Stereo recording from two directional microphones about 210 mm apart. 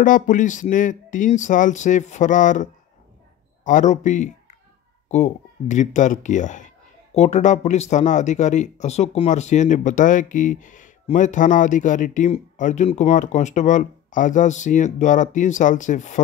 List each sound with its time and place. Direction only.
0.0 s a man's voice: 40° left (ahead or behind)